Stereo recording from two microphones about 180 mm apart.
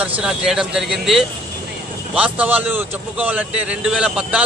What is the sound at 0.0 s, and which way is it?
A man's voice, 5° right (ahead or behind).